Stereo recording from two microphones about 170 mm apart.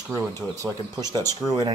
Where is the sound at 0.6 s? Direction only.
20° right (ahead or behind).